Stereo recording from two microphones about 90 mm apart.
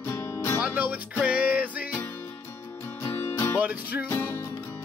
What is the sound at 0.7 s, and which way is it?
Music, 20° right (ahead or behind).